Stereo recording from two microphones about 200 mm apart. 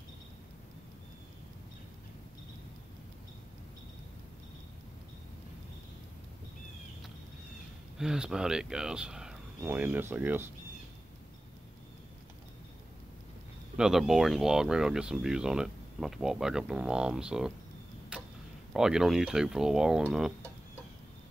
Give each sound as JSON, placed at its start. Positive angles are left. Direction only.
{"t": 8.0, "sound": "speech", "side_deg": -5}
{"t": 13.7, "sound": "speech", "side_deg": 0}
{"t": 18.1, "sound": "tick-tock", "side_deg": -5}
{"t": 18.7, "sound": "speech", "side_deg": -5}